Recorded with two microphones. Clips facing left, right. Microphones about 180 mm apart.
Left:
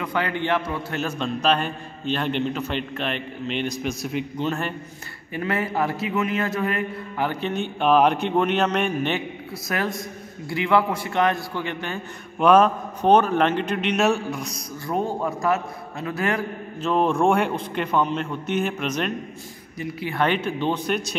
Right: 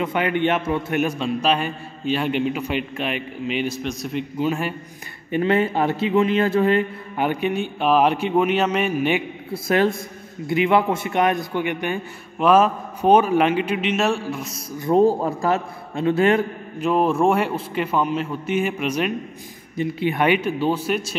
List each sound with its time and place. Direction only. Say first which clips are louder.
0.0 s a man's voice: right 5 dB; 20° right (ahead or behind)
5.3 s a man's voice: right 6 dB; 25° right (ahead or behind)
7.2 s a man's voice: right 5 dB; 10° right (ahead or behind)
9.7 s a man's voice: right 8 dB; 25° right (ahead or behind)
12.4 s a man's voice: even; 5° right (ahead or behind)
14.9 s a man's voice: right 8 dB; 30° right (ahead or behind)
16.8 s a man's voice: right 2 dB; 5° right (ahead or behind)
19.8 s a man's voice: right 7 dB; 25° right (ahead or behind)
20.2 s a man's voice: right 1 dB; 10° right (ahead or behind)